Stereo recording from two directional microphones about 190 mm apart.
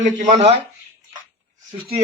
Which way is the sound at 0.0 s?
35° right (ahead or behind).